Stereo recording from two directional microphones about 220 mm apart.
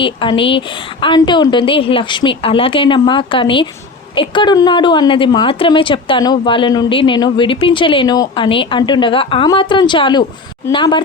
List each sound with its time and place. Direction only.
0.0 s a woman's voice: 20° left (ahead or behind)